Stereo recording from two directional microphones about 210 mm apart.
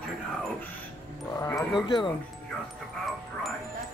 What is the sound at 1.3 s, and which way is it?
Speech, 15° left (ahead or behind).